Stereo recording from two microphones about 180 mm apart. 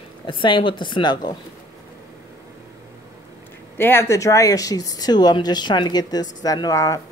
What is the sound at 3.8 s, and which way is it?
Speech, 15° left (ahead or behind).